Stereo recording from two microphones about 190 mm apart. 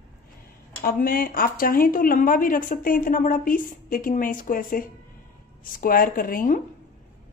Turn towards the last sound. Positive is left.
turn(degrees=45)  # may be behind; listen again after turning